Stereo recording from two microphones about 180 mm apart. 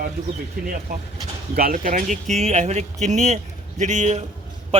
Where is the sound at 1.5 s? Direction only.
50° right (ahead or behind).